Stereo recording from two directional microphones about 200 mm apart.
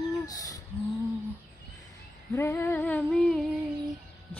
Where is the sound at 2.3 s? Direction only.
10° left (ahead or behind).